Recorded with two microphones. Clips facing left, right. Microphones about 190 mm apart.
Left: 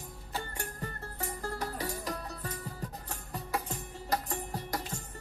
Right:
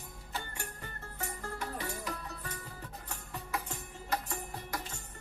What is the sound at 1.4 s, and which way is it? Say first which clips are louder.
Music: left 4 dB; 40° left (ahead or behind).